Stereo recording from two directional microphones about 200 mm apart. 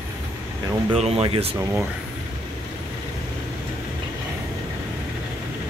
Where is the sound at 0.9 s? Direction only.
30° right (ahead or behind).